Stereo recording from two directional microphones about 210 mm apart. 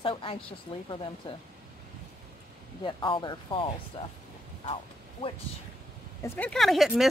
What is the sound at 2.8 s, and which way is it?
Speech, 20° left (ahead or behind).